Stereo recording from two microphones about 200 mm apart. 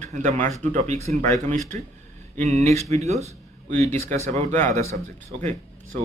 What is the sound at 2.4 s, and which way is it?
Speech, 35° right (ahead or behind).